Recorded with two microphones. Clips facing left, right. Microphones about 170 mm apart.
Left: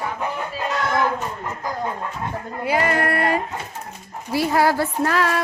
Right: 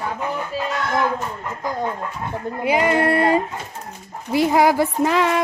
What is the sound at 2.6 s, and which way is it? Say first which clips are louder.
Speech: right 3 dB; 20° right (ahead or behind).